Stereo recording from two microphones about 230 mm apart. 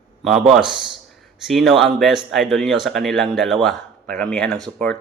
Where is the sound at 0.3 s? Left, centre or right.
Centre.